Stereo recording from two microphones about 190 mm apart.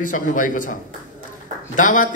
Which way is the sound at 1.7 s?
40° left (ahead or behind).